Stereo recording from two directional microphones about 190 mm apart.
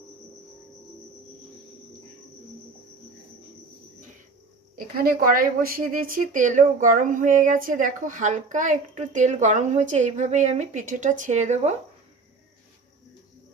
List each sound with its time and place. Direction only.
4.9 s a woman's voice: 50° right (ahead or behind)